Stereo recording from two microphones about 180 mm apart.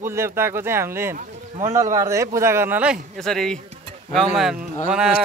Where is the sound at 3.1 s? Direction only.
5° left (ahead or behind).